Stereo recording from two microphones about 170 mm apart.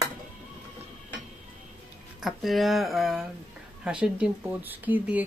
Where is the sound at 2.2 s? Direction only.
Centre (ahead or behind).